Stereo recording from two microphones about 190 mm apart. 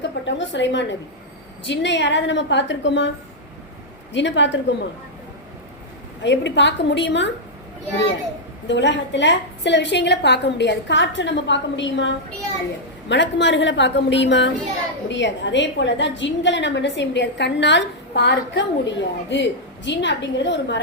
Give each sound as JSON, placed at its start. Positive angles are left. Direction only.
{"t": 0.0, "sound": "a woman's voice", "side_deg": 70}
{"t": 4.1, "sound": "a woman's voice", "side_deg": 70}
{"t": 6.2, "sound": "a woman's voice", "side_deg": 65}
{"t": 8.6, "sound": "a woman's voice", "side_deg": 70}